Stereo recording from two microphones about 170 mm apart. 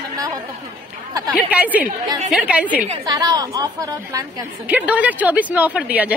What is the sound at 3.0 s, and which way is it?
A woman's voice, 20° right (ahead or behind).